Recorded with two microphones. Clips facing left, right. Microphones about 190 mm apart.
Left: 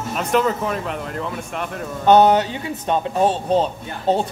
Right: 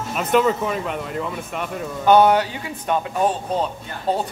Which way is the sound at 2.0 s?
20° left (ahead or behind).